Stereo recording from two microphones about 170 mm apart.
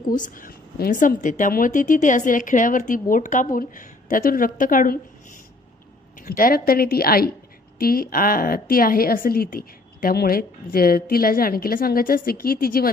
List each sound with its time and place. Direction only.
0.1 s a woman's voice: 50° left (ahead or behind)
6.1 s a woman's voice: 55° left (ahead or behind)